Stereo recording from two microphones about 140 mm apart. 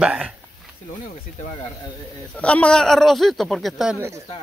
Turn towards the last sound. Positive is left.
turn(degrees=-15)  # may be behind; listen again after turning